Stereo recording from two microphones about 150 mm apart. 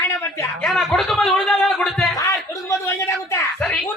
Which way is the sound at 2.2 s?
20° left (ahead or behind).